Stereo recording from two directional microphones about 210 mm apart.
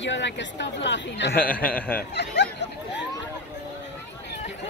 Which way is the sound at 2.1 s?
55° left (ahead or behind).